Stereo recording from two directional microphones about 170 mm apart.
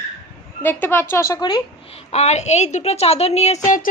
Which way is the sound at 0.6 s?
15° left (ahead or behind).